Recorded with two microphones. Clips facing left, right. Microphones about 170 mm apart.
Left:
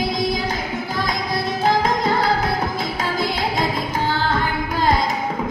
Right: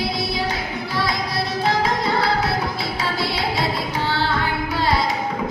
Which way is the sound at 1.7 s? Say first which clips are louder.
Left 3 dB; 45° left (ahead or behind).